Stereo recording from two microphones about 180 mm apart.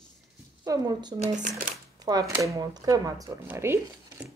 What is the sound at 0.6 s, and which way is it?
Speech, 20° right (ahead or behind).